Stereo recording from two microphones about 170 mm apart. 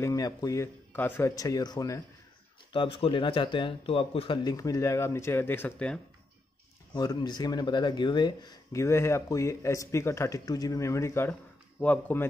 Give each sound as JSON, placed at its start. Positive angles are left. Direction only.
{"t": 0.0, "sound": "speech", "side_deg": 20}
{"t": 6.9, "sound": "speech", "side_deg": 25}